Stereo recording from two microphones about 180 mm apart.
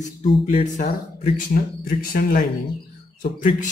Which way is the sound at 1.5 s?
55° left (ahead or behind).